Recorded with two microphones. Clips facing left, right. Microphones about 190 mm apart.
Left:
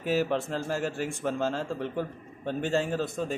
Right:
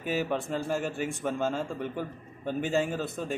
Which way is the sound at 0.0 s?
Centre (ahead or behind).